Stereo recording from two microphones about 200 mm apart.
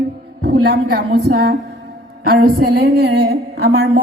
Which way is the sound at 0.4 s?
50° right (ahead or behind).